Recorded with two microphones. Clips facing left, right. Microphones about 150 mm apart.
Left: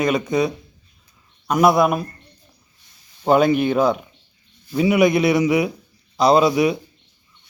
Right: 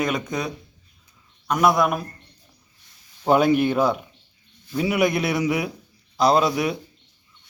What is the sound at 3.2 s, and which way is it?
Speech, 10° right (ahead or behind).